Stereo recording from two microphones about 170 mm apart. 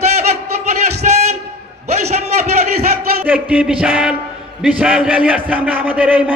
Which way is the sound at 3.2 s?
10° right (ahead or behind).